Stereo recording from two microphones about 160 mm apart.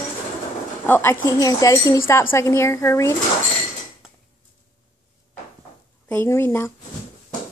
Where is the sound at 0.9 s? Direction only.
15° left (ahead or behind).